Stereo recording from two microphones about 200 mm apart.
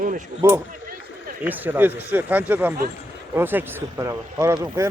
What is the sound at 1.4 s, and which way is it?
Speech, 10° right (ahead or behind).